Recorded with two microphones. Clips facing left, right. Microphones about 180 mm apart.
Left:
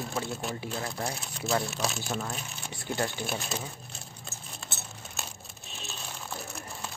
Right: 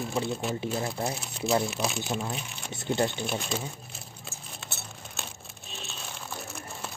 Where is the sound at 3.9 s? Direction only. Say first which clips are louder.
Right 1 dB; centre (ahead or behind).